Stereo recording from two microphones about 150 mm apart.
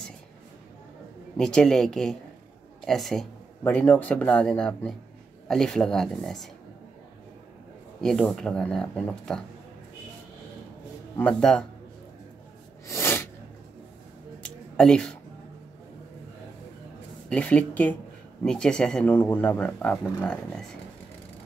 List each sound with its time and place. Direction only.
1.3 s speech: 5° left (ahead or behind)
3.6 s speech: 15° left (ahead or behind)
8.0 s speech: 5° left (ahead or behind)
11.1 s speech: 5° left (ahead or behind)
12.8 s sneeze: 20° left (ahead or behind)
14.4 s a sound: 5° left (ahead or behind)
17.3 s speech: 10° left (ahead or behind)